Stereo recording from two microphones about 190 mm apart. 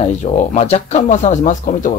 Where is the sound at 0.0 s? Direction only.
40° left (ahead or behind).